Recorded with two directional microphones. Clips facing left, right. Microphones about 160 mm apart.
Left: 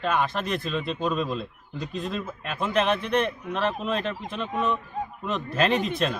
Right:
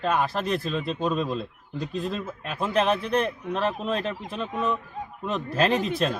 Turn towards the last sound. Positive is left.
turn(degrees=-40)  # may be behind; listen again after turning